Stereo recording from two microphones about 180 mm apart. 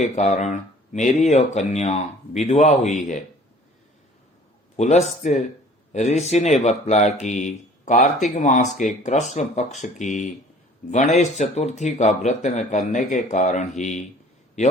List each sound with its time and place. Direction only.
0.0 s speech: 40° left (ahead or behind)
4.8 s speech: 40° left (ahead or behind)